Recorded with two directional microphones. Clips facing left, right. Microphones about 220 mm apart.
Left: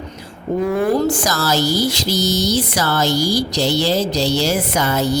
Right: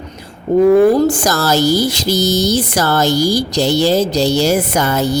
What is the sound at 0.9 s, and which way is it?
A woman's voice, 45° right (ahead or behind).